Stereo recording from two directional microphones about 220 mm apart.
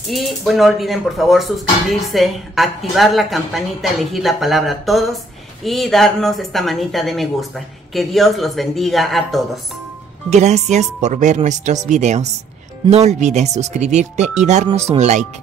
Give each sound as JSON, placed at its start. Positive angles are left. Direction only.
{"t": 0.1, "sound": "speech", "side_deg": 0}
{"t": 10.3, "sound": "speech", "side_deg": -30}